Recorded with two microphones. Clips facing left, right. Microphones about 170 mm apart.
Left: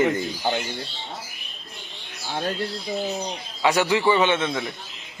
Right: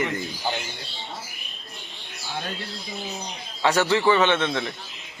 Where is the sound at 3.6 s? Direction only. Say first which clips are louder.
Even; 15° left (ahead or behind).